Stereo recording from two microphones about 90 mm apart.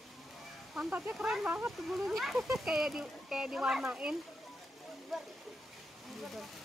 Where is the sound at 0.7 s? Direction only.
20° right (ahead or behind).